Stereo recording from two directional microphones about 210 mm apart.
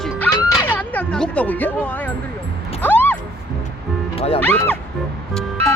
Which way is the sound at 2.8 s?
10° left (ahead or behind).